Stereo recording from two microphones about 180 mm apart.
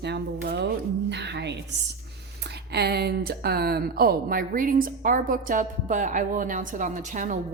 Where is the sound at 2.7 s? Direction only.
65° right (ahead or behind).